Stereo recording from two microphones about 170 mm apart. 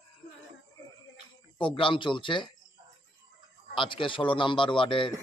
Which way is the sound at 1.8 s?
30° left (ahead or behind).